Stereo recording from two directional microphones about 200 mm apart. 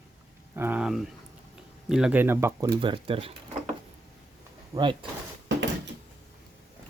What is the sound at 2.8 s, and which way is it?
Speech, 25° right (ahead or behind).